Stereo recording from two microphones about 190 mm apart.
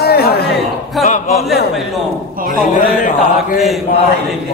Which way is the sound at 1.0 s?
40° left (ahead or behind).